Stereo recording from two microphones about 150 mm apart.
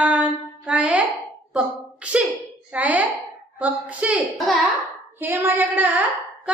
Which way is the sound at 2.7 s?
10° right (ahead or behind).